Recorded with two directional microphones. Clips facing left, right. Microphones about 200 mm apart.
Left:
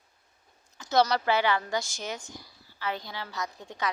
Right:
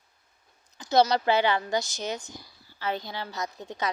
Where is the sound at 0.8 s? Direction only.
15° right (ahead or behind).